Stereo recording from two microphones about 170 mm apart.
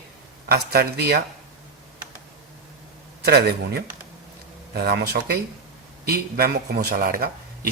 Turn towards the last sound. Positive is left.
turn(degrees=-60)  # may be behind; listen again after turning